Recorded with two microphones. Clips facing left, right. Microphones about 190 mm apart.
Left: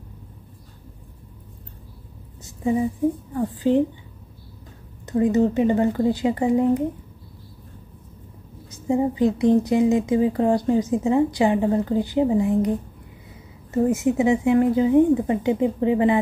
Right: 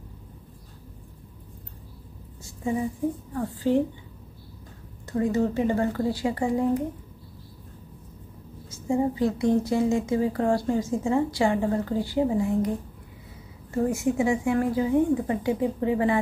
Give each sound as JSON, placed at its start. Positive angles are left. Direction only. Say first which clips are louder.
{"t": 3.3, "sound": "speech", "louder": "left 3 dB", "side_deg": 15}
{"t": 5.0, "sound": "speech", "louder": "left 5 dB", "side_deg": 20}
{"t": 8.6, "sound": "speech", "louder": "left 3 dB", "side_deg": 20}
{"t": 13.7, "sound": "speech", "louder": "left 4 dB", "side_deg": 20}